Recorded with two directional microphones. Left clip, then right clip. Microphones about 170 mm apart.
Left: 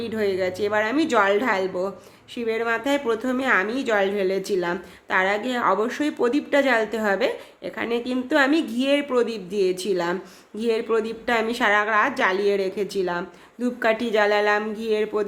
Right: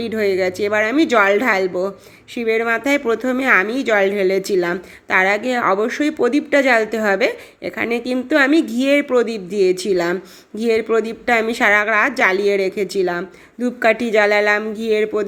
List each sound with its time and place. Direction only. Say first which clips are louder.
0.0 s a woman's voice: right 6 dB; 25° right (ahead or behind)